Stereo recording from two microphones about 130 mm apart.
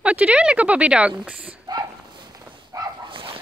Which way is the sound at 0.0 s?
10° right (ahead or behind).